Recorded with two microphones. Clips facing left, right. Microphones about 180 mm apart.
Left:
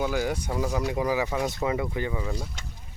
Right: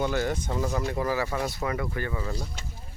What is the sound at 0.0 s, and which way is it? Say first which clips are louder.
Speech: even; 10° left (ahead or behind).